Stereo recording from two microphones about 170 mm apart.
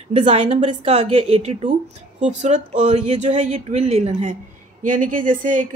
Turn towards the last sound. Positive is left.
turn(degrees=-50)  # may be behind; listen again after turning